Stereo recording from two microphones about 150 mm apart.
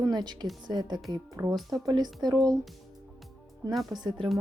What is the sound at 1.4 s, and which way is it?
Speech, 15° right (ahead or behind).